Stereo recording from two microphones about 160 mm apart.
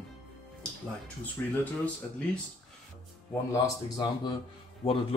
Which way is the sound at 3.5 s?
30° left (ahead or behind).